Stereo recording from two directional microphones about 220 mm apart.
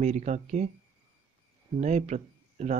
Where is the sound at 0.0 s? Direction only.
35° right (ahead or behind).